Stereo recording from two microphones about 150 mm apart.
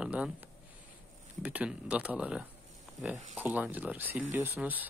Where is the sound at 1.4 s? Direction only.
10° right (ahead or behind).